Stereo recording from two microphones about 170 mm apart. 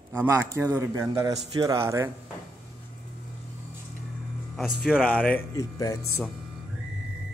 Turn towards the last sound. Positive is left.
turn(degrees=20)  # may be behind; listen again after turning